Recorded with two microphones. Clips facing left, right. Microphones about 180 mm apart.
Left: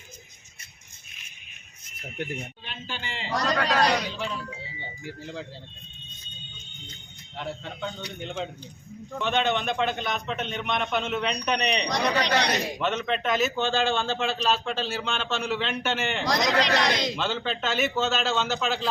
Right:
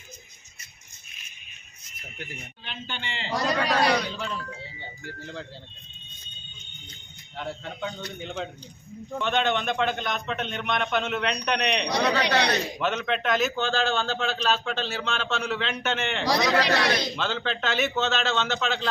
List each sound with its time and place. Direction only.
2.6 s a man's voice: centre (ahead or behind)
3.4 s a man's voice: 20° right (ahead or behind)
3.9 s a man's voice: centre (ahead or behind)
7.3 s a man's voice: centre (ahead or behind)
11.9 s speech: 15° left (ahead or behind)
12.8 s a man's voice: centre (ahead or behind)
16.3 s speech: 20° left (ahead or behind)
17.2 s a man's voice: centre (ahead or behind)